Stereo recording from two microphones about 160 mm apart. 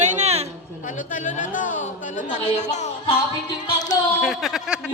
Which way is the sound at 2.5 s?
45° left (ahead or behind).